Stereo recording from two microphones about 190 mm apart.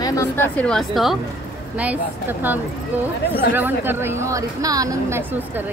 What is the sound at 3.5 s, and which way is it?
A woman's voice, 10° right (ahead or behind).